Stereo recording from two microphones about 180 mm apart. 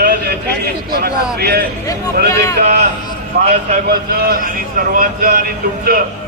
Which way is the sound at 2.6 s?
40° right (ahead or behind).